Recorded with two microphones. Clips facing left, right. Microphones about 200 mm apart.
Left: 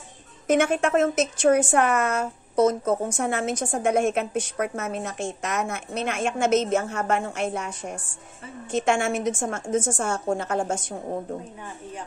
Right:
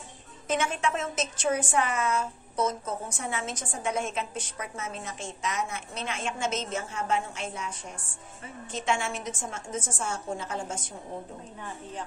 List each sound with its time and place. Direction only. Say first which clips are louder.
0.5 s a woman's voice: left 8 dB; 55° left (ahead or behind)
3.1 s a woman's voice: left 9 dB; 50° left (ahead or behind); by 11.0 s 70° left (ahead or behind)